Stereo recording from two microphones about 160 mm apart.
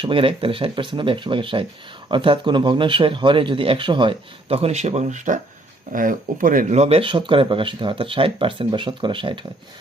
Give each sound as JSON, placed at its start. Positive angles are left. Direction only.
{"t": 0.0, "sound": "speech", "side_deg": -35}
{"t": 6.7, "sound": "speech", "side_deg": -40}